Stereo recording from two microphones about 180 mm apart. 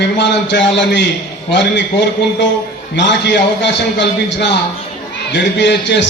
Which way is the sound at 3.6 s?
75° left (ahead or behind).